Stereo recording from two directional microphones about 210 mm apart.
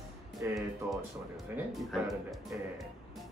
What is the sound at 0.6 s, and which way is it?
Speech, centre (ahead or behind).